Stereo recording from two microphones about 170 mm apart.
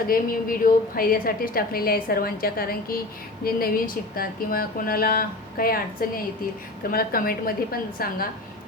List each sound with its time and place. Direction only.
0.1 s a woman's voice: 55° left (ahead or behind)